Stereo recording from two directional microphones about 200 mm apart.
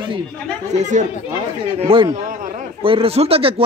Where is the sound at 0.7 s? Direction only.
35° right (ahead or behind).